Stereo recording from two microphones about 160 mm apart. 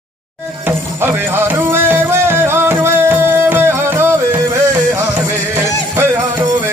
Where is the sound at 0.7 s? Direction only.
15° right (ahead or behind).